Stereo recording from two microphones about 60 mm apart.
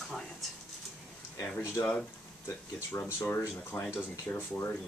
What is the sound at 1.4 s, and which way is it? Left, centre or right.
Speech, left.